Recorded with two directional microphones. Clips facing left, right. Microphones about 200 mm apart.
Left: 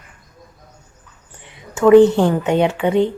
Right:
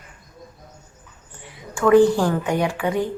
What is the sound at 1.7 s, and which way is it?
A woman's voice, 20° left (ahead or behind).